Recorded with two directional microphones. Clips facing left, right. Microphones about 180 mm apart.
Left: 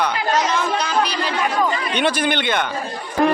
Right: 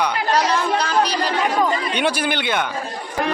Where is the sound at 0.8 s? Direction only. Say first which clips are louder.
Right 1 dB; 35° right (ahead or behind).